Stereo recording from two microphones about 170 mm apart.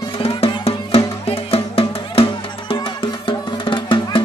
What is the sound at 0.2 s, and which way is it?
Music, 35° left (ahead or behind).